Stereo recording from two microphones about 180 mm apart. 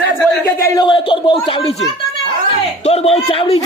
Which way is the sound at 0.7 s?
25° left (ahead or behind).